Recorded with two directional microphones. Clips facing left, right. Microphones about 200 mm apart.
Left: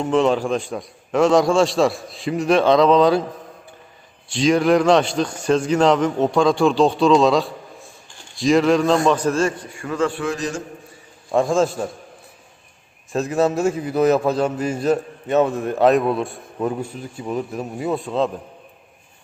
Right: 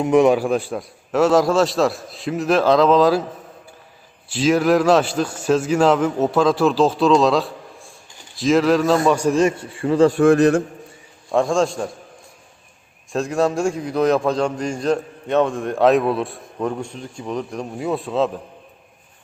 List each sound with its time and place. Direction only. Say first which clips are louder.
0.0 s a man's voice: right 3 dB; 10° right (ahead or behind)
4.3 s a man's voice: even; 5° right (ahead or behind)
9.6 s a man's voice: right 7 dB; 30° right (ahead or behind); by 10.6 s 60° right (ahead or behind)
11.3 s a man's voice: even; centre (ahead or behind)
13.1 s a man's voice: even; centre (ahead or behind)